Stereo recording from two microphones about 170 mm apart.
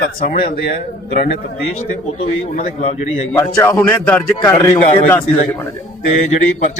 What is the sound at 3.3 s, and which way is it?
Speech, 15° left (ahead or behind).